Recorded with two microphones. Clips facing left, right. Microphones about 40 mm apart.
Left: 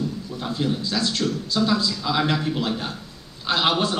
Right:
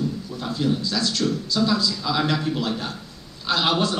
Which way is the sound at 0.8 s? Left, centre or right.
Left.